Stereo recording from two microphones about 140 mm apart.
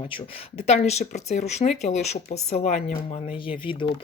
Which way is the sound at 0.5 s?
50° left (ahead or behind).